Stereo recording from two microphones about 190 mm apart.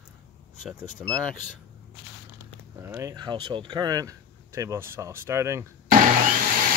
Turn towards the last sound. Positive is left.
turn(degrees=-45)  # may be behind; listen again after turning